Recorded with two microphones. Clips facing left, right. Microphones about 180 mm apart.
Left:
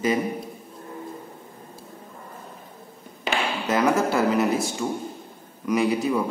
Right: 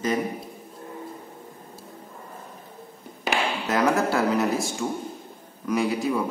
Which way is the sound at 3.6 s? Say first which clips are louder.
Left 1 dB; centre (ahead or behind).